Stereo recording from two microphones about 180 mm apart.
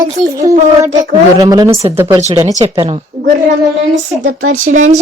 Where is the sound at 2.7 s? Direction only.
30° right (ahead or behind).